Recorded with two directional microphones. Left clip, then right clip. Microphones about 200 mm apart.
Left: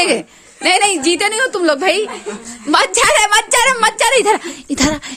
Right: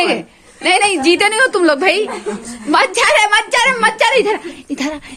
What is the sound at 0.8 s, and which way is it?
A woman's voice, 15° left (ahead or behind).